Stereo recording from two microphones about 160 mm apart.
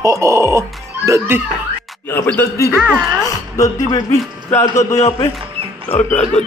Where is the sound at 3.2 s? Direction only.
20° left (ahead or behind).